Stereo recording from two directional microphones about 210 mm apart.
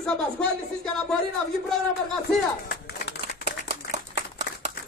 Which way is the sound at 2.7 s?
50° left (ahead or behind).